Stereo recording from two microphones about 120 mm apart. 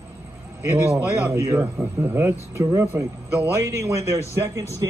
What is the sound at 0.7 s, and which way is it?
A man's voice, 15° right (ahead or behind).